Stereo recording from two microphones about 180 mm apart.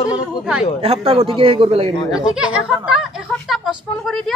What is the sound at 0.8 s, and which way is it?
A man's voice, 30° right (ahead or behind).